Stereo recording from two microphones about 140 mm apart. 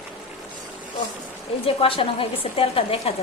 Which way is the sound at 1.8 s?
40° left (ahead or behind).